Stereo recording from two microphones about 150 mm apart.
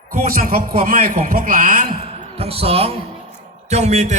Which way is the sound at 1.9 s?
40° right (ahead or behind).